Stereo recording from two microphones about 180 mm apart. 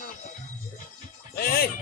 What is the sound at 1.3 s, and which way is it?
Music, 55° left (ahead or behind).